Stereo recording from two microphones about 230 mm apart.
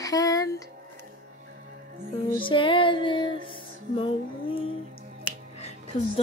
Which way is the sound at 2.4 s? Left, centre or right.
Left.